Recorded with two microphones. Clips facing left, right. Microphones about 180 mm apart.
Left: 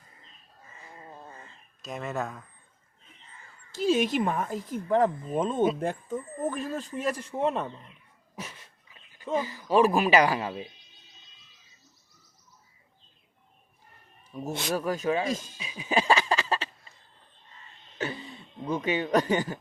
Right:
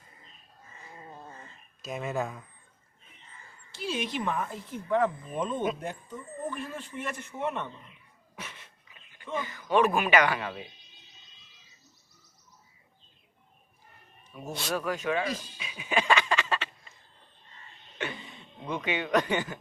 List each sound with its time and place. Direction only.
1.8 s speech: centre (ahead or behind)
3.7 s speech: 45° left (ahead or behind)
8.4 s dog: 40° left (ahead or behind)
9.2 s speech: 35° left (ahead or behind)
14.3 s speech: 35° left (ahead or behind)
15.5 s a sound: 35° left (ahead or behind)
17.9 s a sound: 30° left (ahead or behind)